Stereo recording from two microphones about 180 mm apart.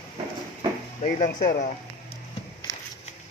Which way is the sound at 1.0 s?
40° left (ahead or behind).